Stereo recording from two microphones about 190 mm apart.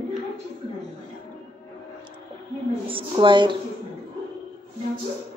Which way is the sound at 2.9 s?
25° right (ahead or behind).